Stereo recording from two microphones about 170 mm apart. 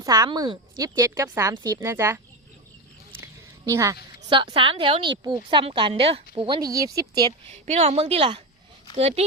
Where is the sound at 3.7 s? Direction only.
20° right (ahead or behind).